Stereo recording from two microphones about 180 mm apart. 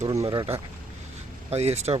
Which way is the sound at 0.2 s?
25° right (ahead or behind).